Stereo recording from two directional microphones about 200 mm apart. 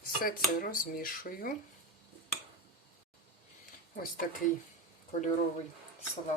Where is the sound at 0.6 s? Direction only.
45° left (ahead or behind).